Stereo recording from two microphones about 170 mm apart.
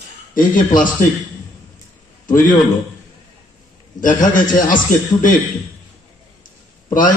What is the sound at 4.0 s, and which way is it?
A man's voice, 50° left (ahead or behind).